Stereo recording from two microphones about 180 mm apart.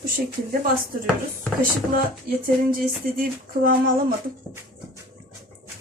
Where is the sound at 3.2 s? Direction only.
55° right (ahead or behind).